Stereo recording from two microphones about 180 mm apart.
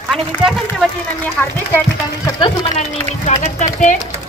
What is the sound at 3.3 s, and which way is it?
Speech, 40° left (ahead or behind).